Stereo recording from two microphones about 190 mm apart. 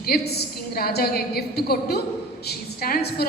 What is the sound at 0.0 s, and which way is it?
A woman's voice, 55° left (ahead or behind).